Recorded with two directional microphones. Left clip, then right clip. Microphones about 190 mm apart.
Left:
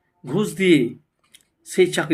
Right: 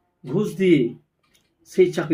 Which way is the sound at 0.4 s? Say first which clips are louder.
Left 1 dB; 5° left (ahead or behind).